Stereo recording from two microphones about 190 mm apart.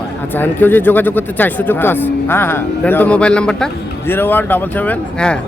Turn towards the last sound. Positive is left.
turn(degrees=5)  # may be behind; listen again after turning